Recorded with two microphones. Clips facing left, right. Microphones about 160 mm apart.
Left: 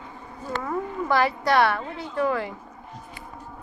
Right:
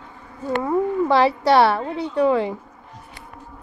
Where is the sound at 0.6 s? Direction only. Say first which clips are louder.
Right 8 dB; 25° right (ahead or behind).